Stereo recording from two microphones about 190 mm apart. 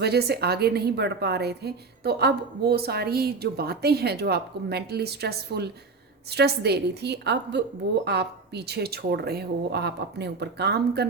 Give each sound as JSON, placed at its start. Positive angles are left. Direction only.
{"t": 0.0, "sound": "a woman's voice", "side_deg": -60}